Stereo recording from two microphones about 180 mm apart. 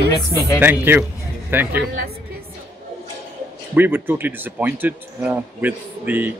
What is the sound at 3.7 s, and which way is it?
Speech, 10° right (ahead or behind).